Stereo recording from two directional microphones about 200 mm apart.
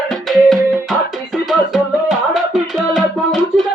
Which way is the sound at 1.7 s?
Centre (ahead or behind).